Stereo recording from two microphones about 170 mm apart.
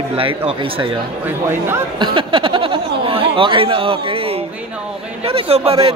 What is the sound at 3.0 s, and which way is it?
Speech, 30° right (ahead or behind).